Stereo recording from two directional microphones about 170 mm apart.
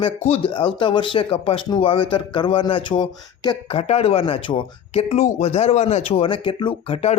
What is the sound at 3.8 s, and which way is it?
Speech, 40° left (ahead or behind).